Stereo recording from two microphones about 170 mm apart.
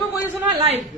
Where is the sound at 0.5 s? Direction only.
35° right (ahead or behind).